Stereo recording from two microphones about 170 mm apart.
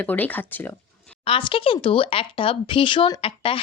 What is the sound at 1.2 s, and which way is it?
A woman's voice, 30° left (ahead or behind).